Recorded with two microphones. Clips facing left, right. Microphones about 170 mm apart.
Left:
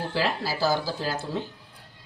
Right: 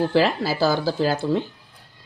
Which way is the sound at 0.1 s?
65° right (ahead or behind).